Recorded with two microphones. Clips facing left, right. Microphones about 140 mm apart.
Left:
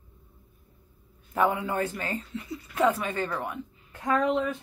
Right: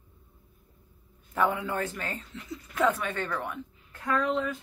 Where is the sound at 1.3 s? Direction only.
5° left (ahead or behind).